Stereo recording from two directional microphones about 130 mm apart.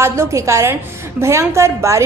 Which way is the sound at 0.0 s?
20° right (ahead or behind).